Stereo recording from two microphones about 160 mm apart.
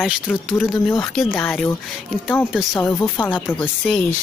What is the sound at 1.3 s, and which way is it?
Speech, 10° left (ahead or behind).